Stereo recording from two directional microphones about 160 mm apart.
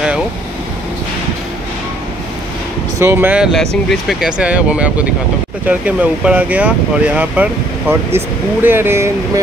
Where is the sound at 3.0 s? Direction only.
15° right (ahead or behind).